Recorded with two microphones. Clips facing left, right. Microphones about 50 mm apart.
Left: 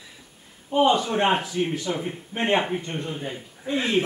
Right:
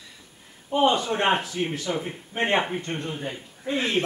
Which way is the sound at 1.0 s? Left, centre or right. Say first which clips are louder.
Left 1 dB; centre.